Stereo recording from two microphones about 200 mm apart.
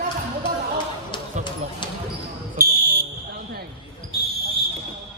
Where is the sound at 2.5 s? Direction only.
50° right (ahead or behind).